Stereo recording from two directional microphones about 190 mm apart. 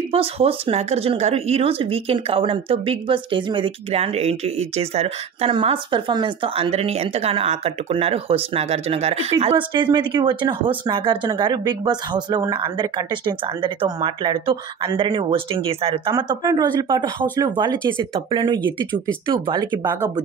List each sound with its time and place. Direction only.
0.1 s speech: 30° right (ahead or behind)